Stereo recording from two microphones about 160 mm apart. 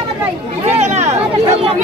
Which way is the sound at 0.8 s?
45° right (ahead or behind).